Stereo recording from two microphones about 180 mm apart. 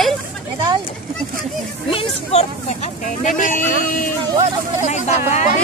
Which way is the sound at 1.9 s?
30° left (ahead or behind).